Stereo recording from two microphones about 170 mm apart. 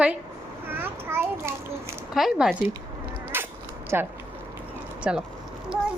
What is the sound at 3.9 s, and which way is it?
A woman's voice, 10° right (ahead or behind).